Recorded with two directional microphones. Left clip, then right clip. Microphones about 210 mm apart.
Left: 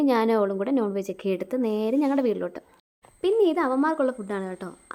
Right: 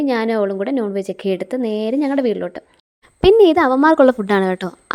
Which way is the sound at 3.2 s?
40° right (ahead or behind).